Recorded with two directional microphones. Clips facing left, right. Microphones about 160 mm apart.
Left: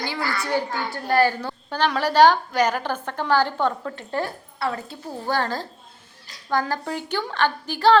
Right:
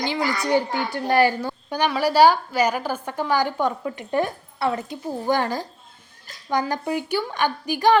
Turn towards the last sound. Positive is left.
turn(degrees=-15)  # may be behind; listen again after turning